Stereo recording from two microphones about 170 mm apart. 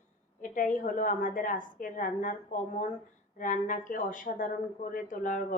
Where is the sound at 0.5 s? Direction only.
50° left (ahead or behind).